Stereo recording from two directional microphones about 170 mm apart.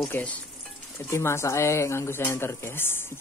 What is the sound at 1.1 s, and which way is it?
Speech, 15° left (ahead or behind).